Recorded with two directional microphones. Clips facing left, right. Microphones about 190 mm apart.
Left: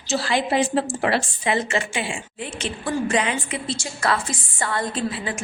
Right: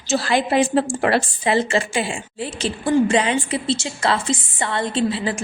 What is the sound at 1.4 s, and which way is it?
A woman's voice, 30° right (ahead or behind).